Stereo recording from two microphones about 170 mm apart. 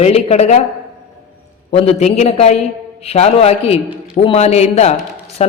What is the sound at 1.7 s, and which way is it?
A man's voice, 35° left (ahead or behind).